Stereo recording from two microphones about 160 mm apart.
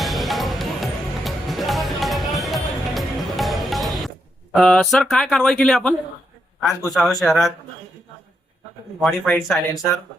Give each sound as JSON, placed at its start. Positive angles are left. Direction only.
{"t": 0.0, "sound": "music", "side_deg": 0}
{"t": 4.5, "sound": "speech", "side_deg": 0}
{"t": 9.0, "sound": "speech", "side_deg": 5}